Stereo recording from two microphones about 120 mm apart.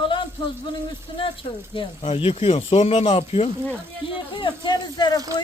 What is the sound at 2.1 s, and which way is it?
Speech, 55° left (ahead or behind).